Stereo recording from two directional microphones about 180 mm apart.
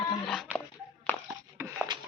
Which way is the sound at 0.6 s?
10° left (ahead or behind).